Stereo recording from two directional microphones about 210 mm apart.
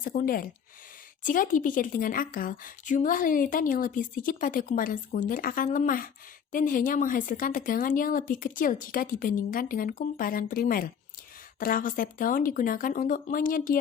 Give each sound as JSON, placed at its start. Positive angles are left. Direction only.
{"t": 0.0, "sound": "a woman's voice", "side_deg": 40}